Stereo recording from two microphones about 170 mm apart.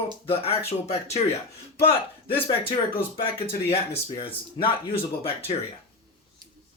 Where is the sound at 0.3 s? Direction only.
35° left (ahead or behind).